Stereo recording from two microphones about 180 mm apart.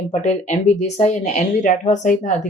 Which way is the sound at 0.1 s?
40° left (ahead or behind).